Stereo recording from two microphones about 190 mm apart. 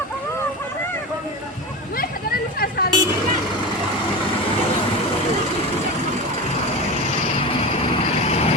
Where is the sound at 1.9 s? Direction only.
50° left (ahead or behind).